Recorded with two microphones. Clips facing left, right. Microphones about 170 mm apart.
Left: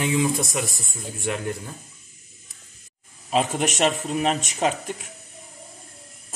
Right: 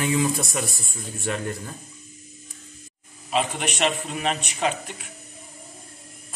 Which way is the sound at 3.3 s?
40° left (ahead or behind).